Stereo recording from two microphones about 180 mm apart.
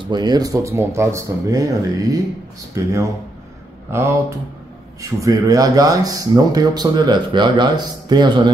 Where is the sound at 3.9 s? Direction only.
15° right (ahead or behind).